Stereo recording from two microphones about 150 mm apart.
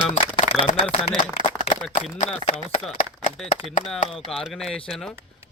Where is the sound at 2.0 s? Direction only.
55° left (ahead or behind).